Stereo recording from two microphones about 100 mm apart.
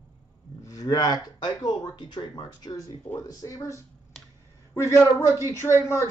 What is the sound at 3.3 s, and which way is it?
A man's voice, 35° left (ahead or behind).